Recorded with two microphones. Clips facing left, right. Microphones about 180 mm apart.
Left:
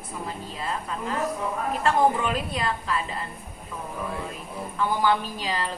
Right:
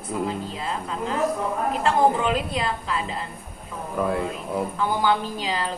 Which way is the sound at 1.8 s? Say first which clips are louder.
Right 1 dB; 25° right (ahead or behind).